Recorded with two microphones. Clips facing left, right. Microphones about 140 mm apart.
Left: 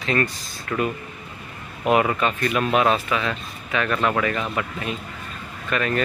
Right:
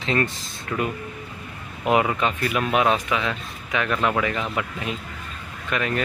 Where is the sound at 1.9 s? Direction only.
15° right (ahead or behind).